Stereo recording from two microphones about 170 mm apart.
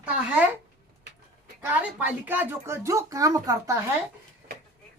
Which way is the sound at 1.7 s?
10° right (ahead or behind).